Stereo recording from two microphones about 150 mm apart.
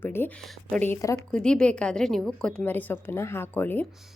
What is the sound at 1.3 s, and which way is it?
A woman's voice, 5° left (ahead or behind).